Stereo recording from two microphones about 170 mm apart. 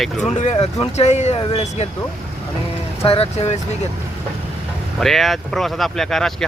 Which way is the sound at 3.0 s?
35° left (ahead or behind).